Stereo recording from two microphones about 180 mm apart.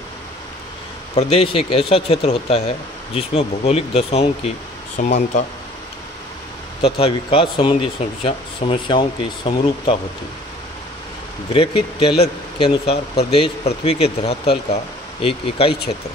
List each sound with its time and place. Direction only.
1.1 s speech: 35° left (ahead or behind)
6.8 s speech: 30° left (ahead or behind)
11.5 s speech: 30° left (ahead or behind)